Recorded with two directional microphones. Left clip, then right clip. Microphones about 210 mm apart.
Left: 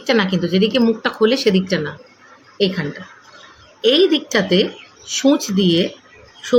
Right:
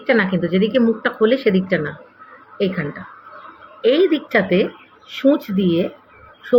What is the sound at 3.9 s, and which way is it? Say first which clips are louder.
A woman's voice: left 1 dB; 20° left (ahead or behind).